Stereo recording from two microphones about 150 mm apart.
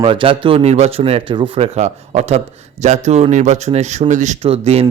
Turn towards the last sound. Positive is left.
turn(degrees=-45)  # may be behind; listen again after turning